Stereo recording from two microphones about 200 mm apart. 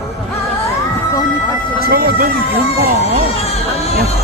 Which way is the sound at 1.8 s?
50° right (ahead or behind).